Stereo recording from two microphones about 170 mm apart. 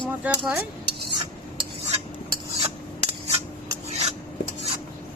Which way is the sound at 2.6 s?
35° right (ahead or behind).